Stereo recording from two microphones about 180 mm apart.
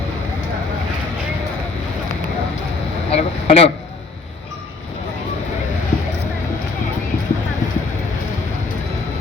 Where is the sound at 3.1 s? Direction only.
35° left (ahead or behind).